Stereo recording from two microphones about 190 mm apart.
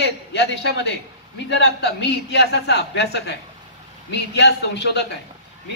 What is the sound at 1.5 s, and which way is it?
Speech, 65° left (ahead or behind).